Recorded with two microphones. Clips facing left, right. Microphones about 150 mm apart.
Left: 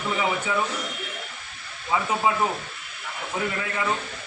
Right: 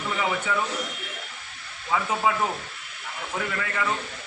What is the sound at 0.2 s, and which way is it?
Speech, 10° left (ahead or behind).